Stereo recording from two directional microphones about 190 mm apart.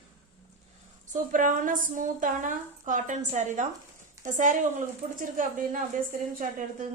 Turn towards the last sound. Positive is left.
turn(degrees=-45)  # may be behind; listen again after turning